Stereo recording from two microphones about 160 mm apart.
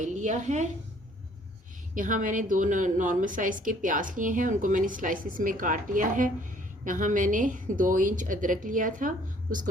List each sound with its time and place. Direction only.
0.0 s speech: 50° right (ahead or behind)
2.0 s a woman's voice: 55° right (ahead or behind)